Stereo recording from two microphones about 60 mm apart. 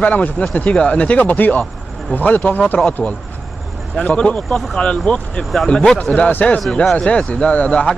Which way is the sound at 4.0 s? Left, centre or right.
Left.